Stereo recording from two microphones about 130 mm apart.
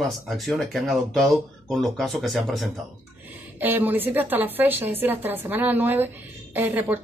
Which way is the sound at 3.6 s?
15° right (ahead or behind).